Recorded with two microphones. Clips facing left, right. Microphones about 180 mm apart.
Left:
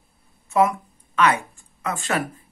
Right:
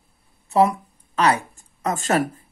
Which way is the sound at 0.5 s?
35° right (ahead or behind).